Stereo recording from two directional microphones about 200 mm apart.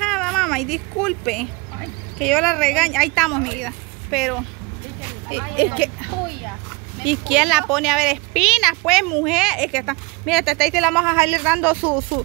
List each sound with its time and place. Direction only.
0.0 s speech: 5° left (ahead or behind)